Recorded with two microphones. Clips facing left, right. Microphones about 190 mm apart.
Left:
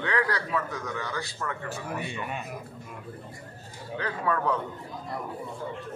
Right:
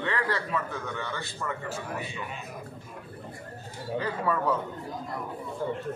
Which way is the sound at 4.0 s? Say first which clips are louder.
Even; 5° right (ahead or behind).